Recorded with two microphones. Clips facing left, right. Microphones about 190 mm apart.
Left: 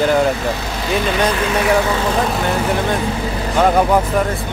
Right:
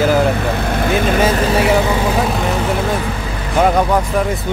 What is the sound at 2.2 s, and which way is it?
Speech, centre (ahead or behind).